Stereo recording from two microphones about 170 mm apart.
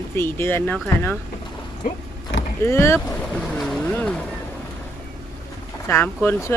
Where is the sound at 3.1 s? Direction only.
5° left (ahead or behind).